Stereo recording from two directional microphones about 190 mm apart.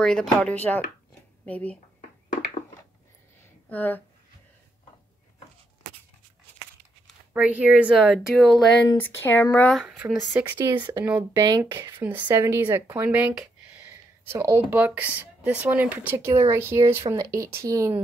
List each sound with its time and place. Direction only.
0.0 s speech: 5° left (ahead or behind)
3.6 s speech: 10° left (ahead or behind)
7.3 s speech: 5° right (ahead or behind)
8.8 s speech: 15° left (ahead or behind); by 10.1 s 5° right (ahead or behind)
10.3 s speech: 15° right (ahead or behind)
12.0 s speech: 10° right (ahead or behind)
13.7 s a sound: 15° right (ahead or behind)
14.7 s speech: 10° right (ahead or behind)